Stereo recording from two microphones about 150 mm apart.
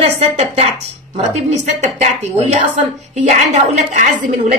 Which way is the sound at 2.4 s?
50° right (ahead or behind).